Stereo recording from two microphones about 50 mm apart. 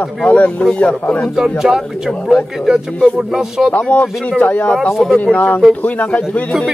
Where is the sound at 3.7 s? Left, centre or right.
Left.